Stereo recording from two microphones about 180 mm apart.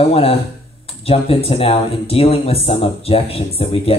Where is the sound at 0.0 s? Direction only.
30° left (ahead or behind).